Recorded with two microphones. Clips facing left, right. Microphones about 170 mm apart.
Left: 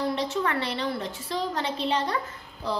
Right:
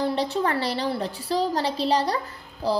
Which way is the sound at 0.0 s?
35° right (ahead or behind).